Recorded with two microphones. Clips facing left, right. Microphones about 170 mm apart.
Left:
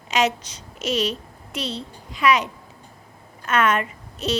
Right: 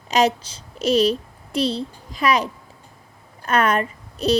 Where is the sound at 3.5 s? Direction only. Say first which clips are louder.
Right 1 dB; 35° right (ahead or behind).